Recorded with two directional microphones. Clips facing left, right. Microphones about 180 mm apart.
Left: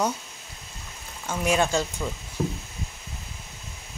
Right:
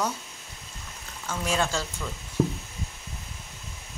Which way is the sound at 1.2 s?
15° left (ahead or behind).